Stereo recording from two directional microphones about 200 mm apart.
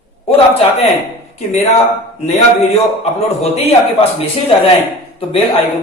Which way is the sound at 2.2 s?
30° left (ahead or behind).